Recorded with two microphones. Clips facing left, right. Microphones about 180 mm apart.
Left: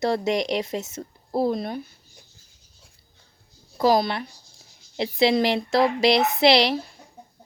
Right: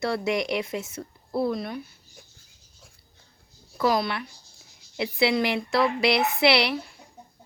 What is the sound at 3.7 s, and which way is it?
Speech, 30° left (ahead or behind).